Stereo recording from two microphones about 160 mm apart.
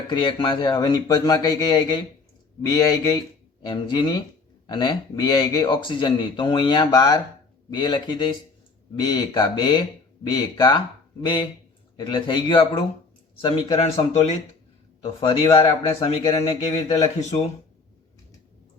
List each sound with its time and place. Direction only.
0.1 s speech: 30° left (ahead or behind)
11.9 s speech: 30° left (ahead or behind); by 17.5 s 45° left (ahead or behind)